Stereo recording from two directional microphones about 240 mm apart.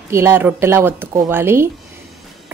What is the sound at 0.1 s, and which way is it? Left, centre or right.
Speech, centre.